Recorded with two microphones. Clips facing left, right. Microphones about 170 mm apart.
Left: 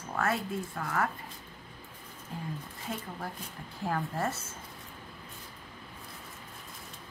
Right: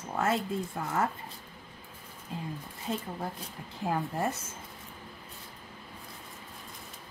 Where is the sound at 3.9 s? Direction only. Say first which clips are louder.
Right 2 dB; 15° right (ahead or behind).